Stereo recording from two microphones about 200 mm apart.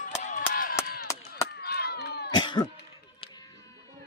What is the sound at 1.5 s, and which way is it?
Chop, 50° left (ahead or behind).